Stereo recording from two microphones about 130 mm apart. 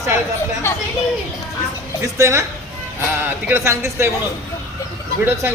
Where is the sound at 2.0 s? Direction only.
20° right (ahead or behind).